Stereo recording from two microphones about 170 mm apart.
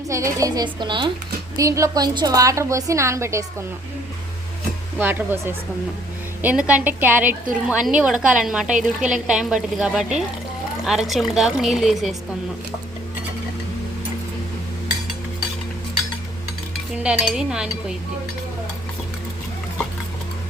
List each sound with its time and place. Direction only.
0.1 s a woman's voice: 20° right (ahead or behind)
4.9 s a woman's voice: 10° right (ahead or behind)
16.9 s a woman's voice: 5° right (ahead or behind)